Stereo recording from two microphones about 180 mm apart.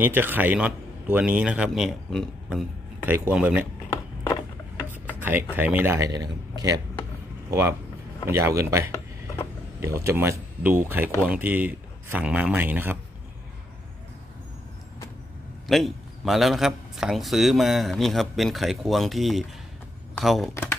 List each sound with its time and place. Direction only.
0.0 s a man's voice: 10° right (ahead or behind)
4.2 s wood: 10° left (ahead or behind)
5.6 s speech: 10° right (ahead or behind)
8.3 s a man's voice: 15° right (ahead or behind)
15.6 s speech: centre (ahead or behind)